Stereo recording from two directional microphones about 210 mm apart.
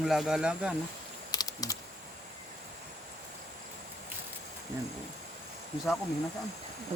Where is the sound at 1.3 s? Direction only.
20° left (ahead or behind).